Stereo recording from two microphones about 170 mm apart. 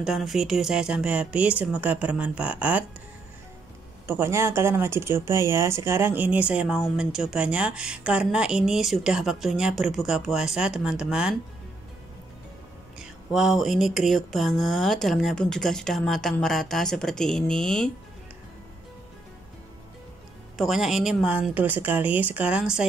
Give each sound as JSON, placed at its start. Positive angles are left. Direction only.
{"t": 0.0, "sound": "speech", "side_deg": 0}
{"t": 4.1, "sound": "speech", "side_deg": -15}
{"t": 13.0, "sound": "speech", "side_deg": 0}
{"t": 20.5, "sound": "speech", "side_deg": 0}